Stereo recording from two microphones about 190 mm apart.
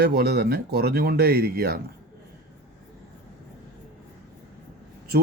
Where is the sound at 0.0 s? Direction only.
55° right (ahead or behind).